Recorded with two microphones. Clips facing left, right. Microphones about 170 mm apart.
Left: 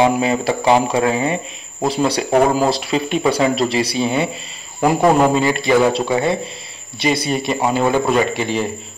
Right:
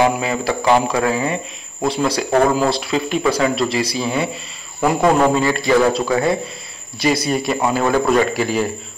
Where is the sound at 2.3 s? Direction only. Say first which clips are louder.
Left 1 dB; 15° left (ahead or behind).